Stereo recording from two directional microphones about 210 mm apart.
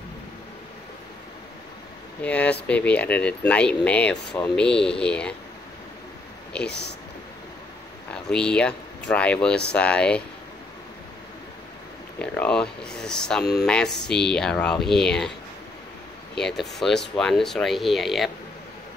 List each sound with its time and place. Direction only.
2.2 s speech: 5° left (ahead or behind)
6.6 s speech: 50° left (ahead or behind)
8.3 s speech: 5° left (ahead or behind)
12.2 s speech: 5° left (ahead or behind)
16.3 s speech: centre (ahead or behind)